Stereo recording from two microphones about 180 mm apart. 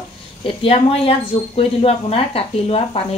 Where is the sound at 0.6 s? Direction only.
30° left (ahead or behind).